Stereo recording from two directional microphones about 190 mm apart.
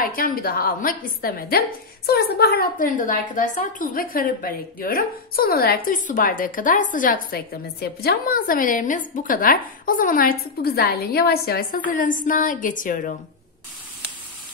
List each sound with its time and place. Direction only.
0.0 s a woman's voice: 50° left (ahead or behind)
11.9 s a woman's voice: 45° left (ahead or behind)